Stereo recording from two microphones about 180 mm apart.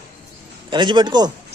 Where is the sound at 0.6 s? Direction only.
25° right (ahead or behind).